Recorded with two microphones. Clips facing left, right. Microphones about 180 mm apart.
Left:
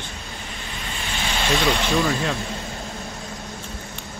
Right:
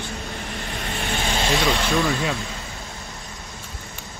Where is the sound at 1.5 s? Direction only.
Centre (ahead or behind).